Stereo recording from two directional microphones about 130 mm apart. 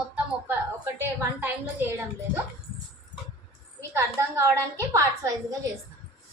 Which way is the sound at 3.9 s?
20° right (ahead or behind).